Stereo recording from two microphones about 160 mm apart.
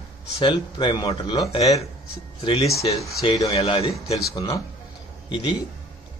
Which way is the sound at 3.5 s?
40° left (ahead or behind).